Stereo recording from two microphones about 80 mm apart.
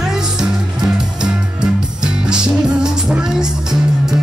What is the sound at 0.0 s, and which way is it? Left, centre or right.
Music, centre.